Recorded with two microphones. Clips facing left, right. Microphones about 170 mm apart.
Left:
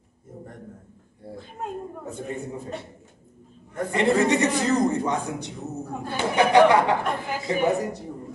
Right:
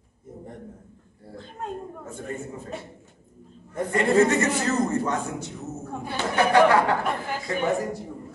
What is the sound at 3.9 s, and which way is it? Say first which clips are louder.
A man's voice: right 1 dB; 20° left (ahead or behind).